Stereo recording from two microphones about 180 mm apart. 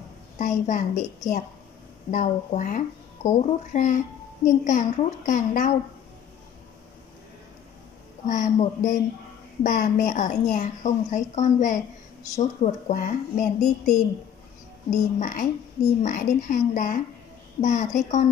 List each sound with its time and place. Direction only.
0.4 s a woman's voice: 45° left (ahead or behind)
2.0 s a woman's voice: 45° left (ahead or behind)
8.3 s a woman's voice: 45° left (ahead or behind)